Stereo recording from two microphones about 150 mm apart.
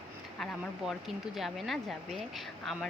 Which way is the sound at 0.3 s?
Centre (ahead or behind).